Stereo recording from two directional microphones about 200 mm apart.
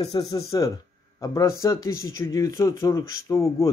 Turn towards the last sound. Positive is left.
turn(degrees=15)  # may be behind; listen again after turning